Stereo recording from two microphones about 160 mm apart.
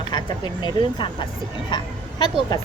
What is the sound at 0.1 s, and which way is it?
Speech, 30° left (ahead or behind).